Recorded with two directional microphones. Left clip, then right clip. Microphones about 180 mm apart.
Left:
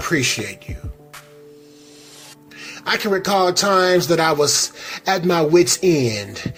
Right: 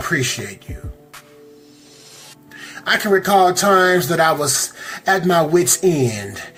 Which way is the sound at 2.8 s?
50° left (ahead or behind).